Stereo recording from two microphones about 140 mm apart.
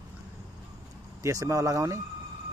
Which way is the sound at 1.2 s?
25° right (ahead or behind).